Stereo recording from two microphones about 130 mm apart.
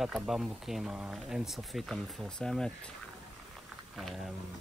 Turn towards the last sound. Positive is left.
turn(degrees=-5)  # may be behind; listen again after turning